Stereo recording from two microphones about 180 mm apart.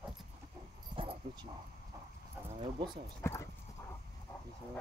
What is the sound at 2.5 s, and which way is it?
Speech, 25° right (ahead or behind).